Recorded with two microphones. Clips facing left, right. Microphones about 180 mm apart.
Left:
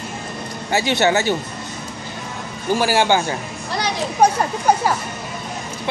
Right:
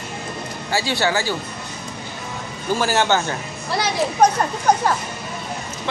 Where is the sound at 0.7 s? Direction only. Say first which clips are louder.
Left 4 dB; 20° left (ahead or behind).